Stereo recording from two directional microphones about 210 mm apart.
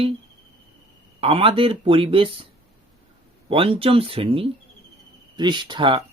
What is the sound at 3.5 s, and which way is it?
Speech, 25° right (ahead or behind).